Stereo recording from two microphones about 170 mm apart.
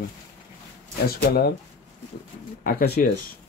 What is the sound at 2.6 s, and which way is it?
Speech, 55° left (ahead or behind).